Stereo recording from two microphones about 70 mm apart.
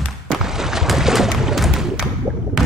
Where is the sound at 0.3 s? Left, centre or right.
Centre.